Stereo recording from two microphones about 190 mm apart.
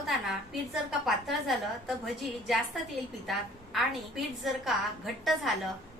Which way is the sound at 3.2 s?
Centre (ahead or behind).